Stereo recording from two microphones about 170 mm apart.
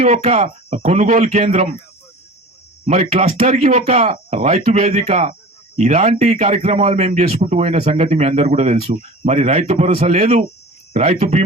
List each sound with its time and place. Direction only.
0.0 s a man's voice: 40° right (ahead or behind)
0.8 s a man's voice: 50° right (ahead or behind)
2.8 s a man's voice: 45° right (ahead or behind)